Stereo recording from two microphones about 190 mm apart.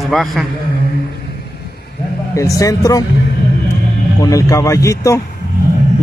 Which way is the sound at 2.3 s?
15° left (ahead or behind).